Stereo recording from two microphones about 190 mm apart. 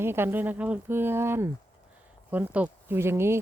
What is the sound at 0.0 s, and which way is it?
Speech, 10° right (ahead or behind).